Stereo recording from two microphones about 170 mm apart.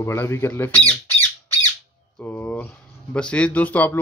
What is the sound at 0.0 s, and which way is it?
Speech, 15° left (ahead or behind).